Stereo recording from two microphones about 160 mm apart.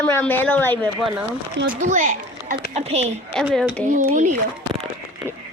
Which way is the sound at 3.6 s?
Centre (ahead or behind).